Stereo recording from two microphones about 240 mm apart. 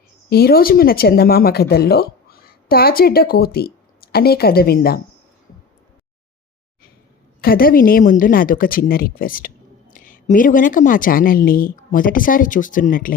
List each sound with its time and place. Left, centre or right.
0.3 s speech: left
7.4 s speech: left